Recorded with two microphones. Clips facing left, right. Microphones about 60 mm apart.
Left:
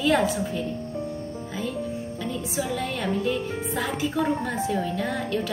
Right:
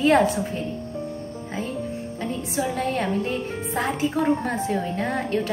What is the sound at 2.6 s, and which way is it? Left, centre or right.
A woman's voice, right.